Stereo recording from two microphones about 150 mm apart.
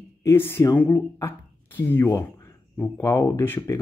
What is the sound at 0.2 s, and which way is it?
Speech, 20° left (ahead or behind).